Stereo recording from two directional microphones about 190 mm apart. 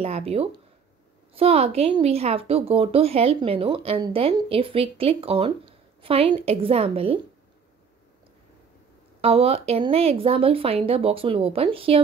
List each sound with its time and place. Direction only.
0.0 s a woman's voice: 30° right (ahead or behind)
9.2 s a woman's voice: 30° right (ahead or behind)